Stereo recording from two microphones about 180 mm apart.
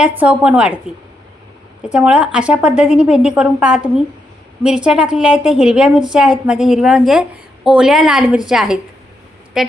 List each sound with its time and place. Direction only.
0.2 s a woman's voice: 5° right (ahead or behind)
1.9 s a woman's voice: 5° right (ahead or behind)